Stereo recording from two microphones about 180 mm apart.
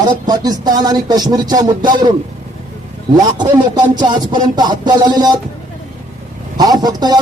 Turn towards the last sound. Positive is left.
turn(degrees=-20)  # may be behind; listen again after turning